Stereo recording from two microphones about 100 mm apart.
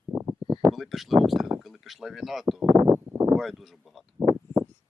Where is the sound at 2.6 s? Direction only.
30° right (ahead or behind).